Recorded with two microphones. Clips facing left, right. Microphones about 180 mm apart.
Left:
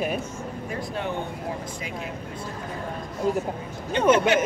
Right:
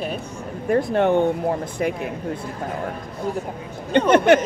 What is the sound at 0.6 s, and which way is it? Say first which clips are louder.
Speech: right 14 dB; 60° right (ahead or behind).